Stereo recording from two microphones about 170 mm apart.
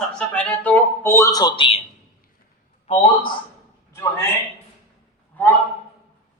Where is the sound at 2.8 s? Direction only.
35° left (ahead or behind).